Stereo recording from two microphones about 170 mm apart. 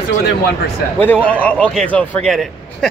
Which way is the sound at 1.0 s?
10° left (ahead or behind).